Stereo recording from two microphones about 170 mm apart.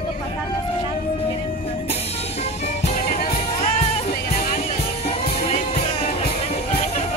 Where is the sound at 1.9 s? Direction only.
40° left (ahead or behind).